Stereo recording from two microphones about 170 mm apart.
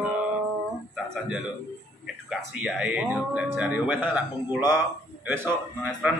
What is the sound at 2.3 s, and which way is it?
A man's voice, 5° right (ahead or behind).